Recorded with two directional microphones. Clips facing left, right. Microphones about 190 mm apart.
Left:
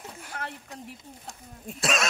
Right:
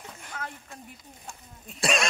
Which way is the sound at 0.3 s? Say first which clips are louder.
Left 1 dB; 65° left (ahead or behind).